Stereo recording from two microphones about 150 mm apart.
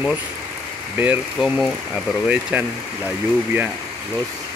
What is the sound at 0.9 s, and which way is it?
Speech, 15° right (ahead or behind).